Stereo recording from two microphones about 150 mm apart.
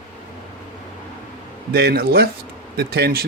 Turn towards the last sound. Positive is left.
turn(degrees=-90)